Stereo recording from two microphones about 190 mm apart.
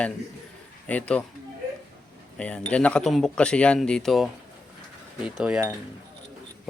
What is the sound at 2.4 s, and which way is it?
A man's voice, 5° left (ahead or behind).